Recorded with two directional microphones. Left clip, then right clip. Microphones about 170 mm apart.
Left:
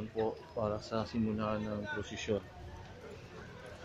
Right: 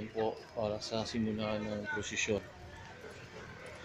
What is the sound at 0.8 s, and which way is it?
Speech, 5° left (ahead or behind).